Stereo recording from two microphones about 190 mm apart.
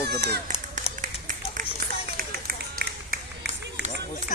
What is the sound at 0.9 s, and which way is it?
Run, 45° right (ahead or behind).